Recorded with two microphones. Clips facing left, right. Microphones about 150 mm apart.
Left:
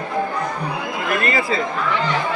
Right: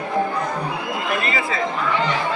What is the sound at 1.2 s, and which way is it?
Chatter, 45° left (ahead or behind).